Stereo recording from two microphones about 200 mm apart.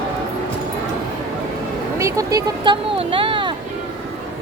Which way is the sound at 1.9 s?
15° right (ahead or behind).